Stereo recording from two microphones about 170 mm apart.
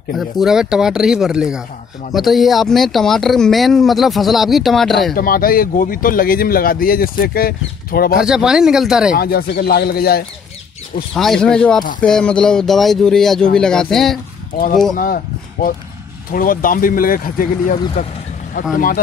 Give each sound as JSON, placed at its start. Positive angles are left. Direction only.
{"t": 0.2, "sound": "speech", "side_deg": 0}
{"t": 5.1, "sound": "speech", "side_deg": 55}
{"t": 8.2, "sound": "speech", "side_deg": -5}
{"t": 9.1, "sound": "speech", "side_deg": 65}
{"t": 11.1, "sound": "speech", "side_deg": 0}
{"t": 14.5, "sound": "speech", "side_deg": 60}